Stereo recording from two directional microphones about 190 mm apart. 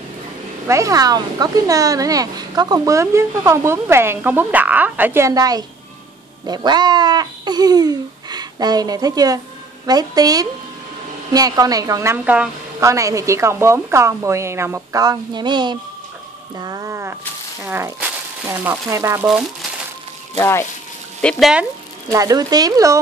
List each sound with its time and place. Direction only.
0.7 s speech: 15° right (ahead or behind)
20.3 s speech: 15° left (ahead or behind)
21.2 s speech: centre (ahead or behind)
22.1 s speech: 20° right (ahead or behind)